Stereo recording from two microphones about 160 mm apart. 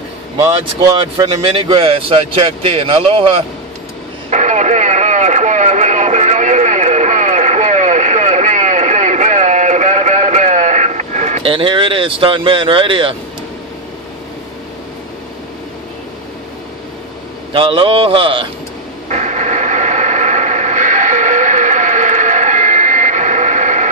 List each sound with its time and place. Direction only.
1.1 s speech: 30° right (ahead or behind)
4.3 s radio: 50° right (ahead or behind)
11.5 s speech: 30° right (ahead or behind)
17.5 s speech: 35° right (ahead or behind)
19.0 s radio: 45° right (ahead or behind)